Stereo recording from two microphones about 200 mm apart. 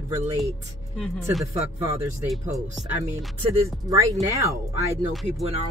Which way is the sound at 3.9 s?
15° right (ahead or behind).